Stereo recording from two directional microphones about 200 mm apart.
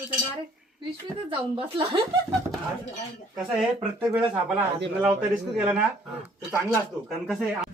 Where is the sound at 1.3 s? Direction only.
25° right (ahead or behind).